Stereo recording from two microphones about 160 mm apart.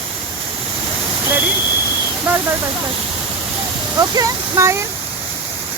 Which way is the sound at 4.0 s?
20° right (ahead or behind).